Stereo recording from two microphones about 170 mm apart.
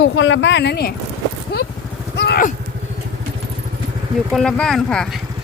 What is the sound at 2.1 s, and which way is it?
Vehicle, 80° left.